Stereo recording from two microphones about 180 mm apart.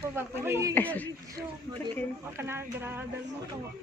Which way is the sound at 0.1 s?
15° right (ahead or behind).